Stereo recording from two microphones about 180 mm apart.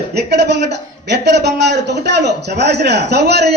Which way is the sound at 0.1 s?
65° right (ahead or behind).